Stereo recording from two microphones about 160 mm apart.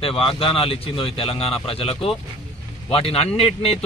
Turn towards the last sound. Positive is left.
turn(degrees=40)  # may be behind; listen again after turning